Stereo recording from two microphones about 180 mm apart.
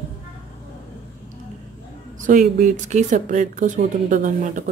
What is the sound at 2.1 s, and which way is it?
Speech, 45° right (ahead or behind).